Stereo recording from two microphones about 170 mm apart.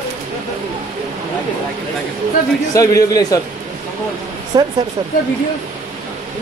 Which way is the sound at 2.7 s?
20° left (ahead or behind).